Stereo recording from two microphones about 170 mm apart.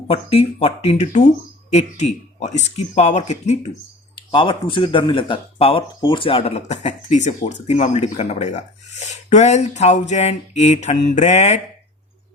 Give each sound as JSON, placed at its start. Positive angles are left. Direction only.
{"t": 0.1, "sound": "speech", "side_deg": 35}
{"t": 4.1, "sound": "speech", "side_deg": 30}